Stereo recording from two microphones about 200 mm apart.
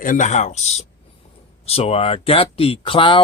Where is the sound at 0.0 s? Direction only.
40° left (ahead or behind).